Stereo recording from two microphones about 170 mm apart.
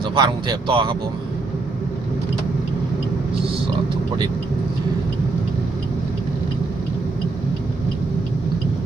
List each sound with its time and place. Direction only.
0.0 s speech: 25° right (ahead or behind)